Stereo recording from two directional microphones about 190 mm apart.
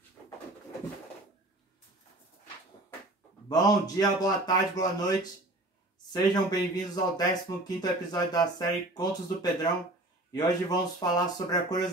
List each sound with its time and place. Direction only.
3.4 s speech: 20° left (ahead or behind)